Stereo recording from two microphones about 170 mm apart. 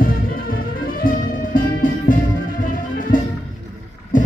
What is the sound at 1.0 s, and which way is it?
Music, 55° left (ahead or behind).